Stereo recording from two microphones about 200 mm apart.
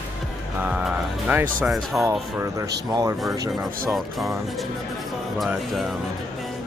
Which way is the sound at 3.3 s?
15° right (ahead or behind).